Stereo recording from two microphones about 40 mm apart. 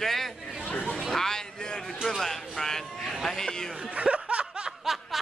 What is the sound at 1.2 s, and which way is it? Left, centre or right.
Speech, centre.